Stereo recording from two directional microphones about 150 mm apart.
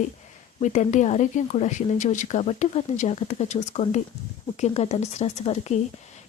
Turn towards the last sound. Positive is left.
turn(degrees=45)  # may be behind; listen again after turning